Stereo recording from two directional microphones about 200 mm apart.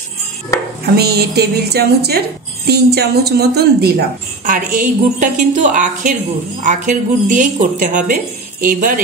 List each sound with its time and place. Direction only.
0.9 s a woman's voice: 50° right (ahead or behind)
4.5 s a woman's voice: 40° right (ahead or behind)